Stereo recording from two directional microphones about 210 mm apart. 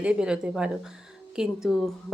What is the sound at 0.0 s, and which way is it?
A woman's voice, 5° right (ahead or behind).